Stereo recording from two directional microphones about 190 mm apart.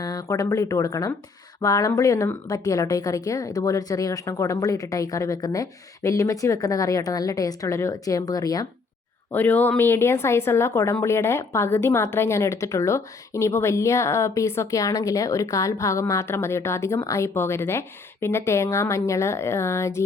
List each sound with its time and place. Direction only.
0.0 s speech: 20° left (ahead or behind)
9.3 s speech: 10° left (ahead or behind)